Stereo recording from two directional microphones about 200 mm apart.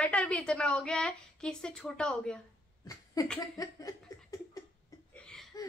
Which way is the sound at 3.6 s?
15° left (ahead or behind).